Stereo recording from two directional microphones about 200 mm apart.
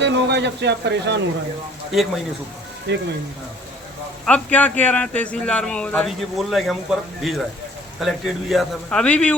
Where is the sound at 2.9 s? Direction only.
60° right (ahead or behind).